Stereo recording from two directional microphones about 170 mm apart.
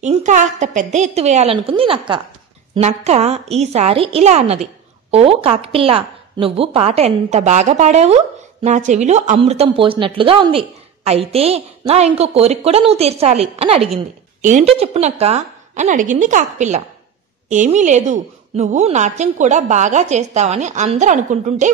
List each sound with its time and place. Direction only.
0.0 s a woman's voice: 45° right (ahead or behind)